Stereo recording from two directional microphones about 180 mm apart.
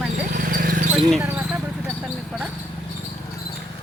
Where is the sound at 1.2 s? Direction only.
10° right (ahead or behind).